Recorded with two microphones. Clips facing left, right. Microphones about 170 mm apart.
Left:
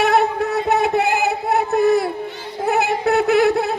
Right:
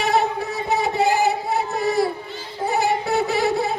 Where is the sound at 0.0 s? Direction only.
60° left (ahead or behind).